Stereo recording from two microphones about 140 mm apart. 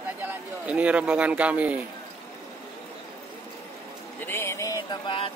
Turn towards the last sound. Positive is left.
turn(degrees=40)  # may be behind; listen again after turning